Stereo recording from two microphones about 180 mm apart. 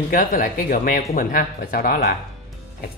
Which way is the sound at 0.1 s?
50° left (ahead or behind).